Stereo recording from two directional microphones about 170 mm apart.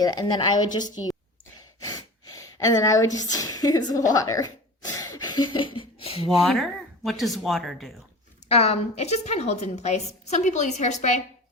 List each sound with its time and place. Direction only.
0.0 s a woman's voice: 25° left (ahead or behind)
1.8 s gasp: 20° left (ahead or behind)
6.4 s speech: centre (ahead or behind)
8.4 s a woman's voice: 35° left (ahead or behind)